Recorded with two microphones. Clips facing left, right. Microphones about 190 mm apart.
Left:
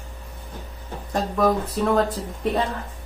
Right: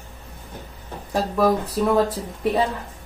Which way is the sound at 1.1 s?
5° right (ahead or behind).